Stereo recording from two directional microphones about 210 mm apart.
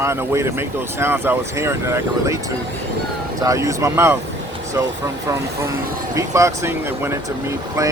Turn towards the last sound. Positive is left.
turn(degrees=-15)  # may be behind; listen again after turning